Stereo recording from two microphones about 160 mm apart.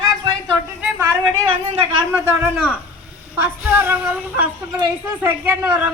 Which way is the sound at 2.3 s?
10° right (ahead or behind).